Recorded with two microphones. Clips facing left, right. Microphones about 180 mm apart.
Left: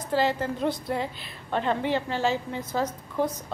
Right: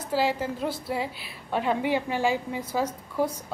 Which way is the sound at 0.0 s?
10° right (ahead or behind).